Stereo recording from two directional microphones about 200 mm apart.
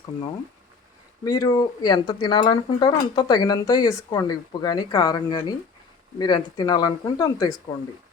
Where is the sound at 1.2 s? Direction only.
20° left (ahead or behind).